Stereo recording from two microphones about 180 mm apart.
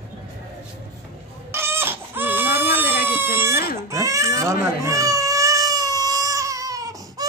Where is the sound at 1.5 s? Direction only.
15° right (ahead or behind).